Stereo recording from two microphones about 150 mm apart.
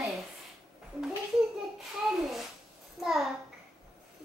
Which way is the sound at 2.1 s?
Centre (ahead or behind).